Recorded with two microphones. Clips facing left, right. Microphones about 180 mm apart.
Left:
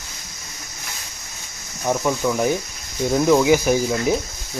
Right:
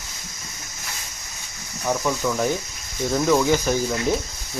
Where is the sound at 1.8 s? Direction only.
15° left (ahead or behind).